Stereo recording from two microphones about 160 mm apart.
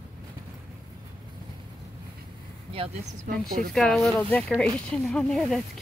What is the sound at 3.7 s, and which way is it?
Speech, centre (ahead or behind).